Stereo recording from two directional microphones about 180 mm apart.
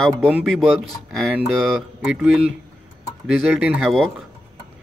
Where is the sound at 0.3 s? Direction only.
10° right (ahead or behind).